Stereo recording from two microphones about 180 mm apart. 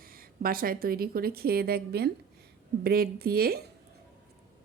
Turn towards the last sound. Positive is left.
turn(degrees=-60)  # may be behind; listen again after turning